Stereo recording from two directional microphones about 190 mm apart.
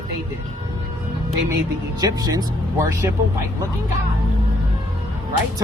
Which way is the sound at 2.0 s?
20° right (ahead or behind).